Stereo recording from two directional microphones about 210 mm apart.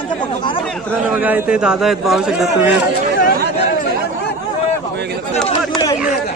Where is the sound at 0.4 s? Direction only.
25° left (ahead or behind).